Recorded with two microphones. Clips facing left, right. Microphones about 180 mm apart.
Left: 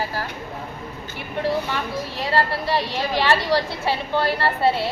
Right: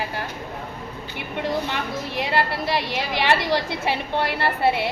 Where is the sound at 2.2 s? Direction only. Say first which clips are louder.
Left 1 dB; 15° right (ahead or behind).